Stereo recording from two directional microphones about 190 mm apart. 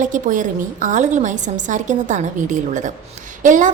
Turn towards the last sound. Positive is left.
turn(degrees=-40)  # may be behind; listen again after turning